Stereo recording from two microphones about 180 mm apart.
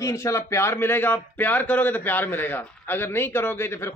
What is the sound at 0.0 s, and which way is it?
A man's voice, 15° left (ahead or behind).